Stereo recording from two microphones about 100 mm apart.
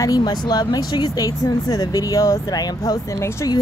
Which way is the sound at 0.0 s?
40° left (ahead or behind).